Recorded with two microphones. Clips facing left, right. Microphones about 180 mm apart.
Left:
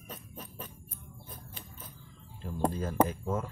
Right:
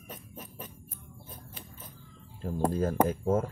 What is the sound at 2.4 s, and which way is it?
Speech, 45° right (ahead or behind).